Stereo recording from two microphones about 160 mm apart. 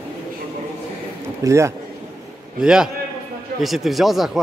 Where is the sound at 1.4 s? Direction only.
20° right (ahead or behind).